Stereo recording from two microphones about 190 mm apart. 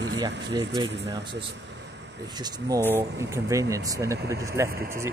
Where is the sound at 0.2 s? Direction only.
20° right (ahead or behind).